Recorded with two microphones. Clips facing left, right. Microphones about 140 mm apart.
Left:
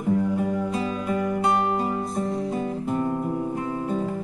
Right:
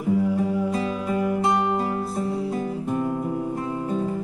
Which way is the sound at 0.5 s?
5° right (ahead or behind).